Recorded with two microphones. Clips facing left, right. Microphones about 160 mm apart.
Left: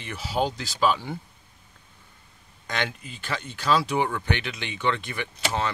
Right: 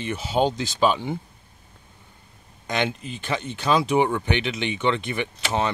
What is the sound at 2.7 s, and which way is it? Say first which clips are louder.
Speech: right 5 dB; 20° right (ahead or behind).